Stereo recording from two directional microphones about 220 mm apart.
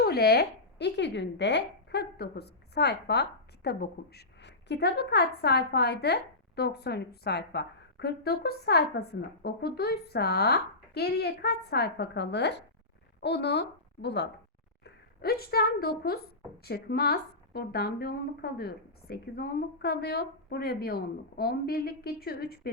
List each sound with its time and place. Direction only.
0.0 s a woman's voice: 45° left (ahead or behind)